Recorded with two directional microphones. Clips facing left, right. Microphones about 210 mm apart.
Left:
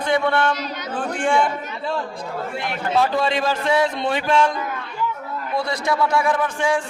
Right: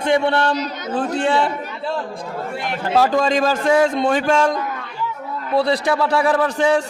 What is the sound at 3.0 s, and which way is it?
Speech, 45° right (ahead or behind).